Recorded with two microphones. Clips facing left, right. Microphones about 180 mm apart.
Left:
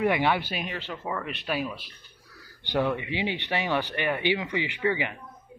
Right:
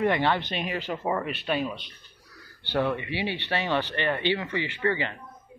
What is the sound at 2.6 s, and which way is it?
Speech, 15° left (ahead or behind).